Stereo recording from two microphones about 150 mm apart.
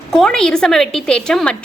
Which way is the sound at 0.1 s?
5° left (ahead or behind).